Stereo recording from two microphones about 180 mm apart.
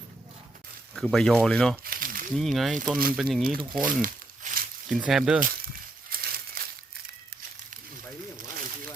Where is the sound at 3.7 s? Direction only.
50° right (ahead or behind).